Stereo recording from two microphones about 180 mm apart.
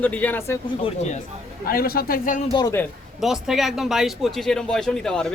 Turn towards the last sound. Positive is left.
turn(degrees=5)  # may be behind; listen again after turning